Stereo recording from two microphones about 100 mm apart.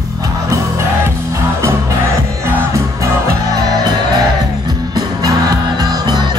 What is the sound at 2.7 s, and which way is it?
Music, 30° right (ahead or behind).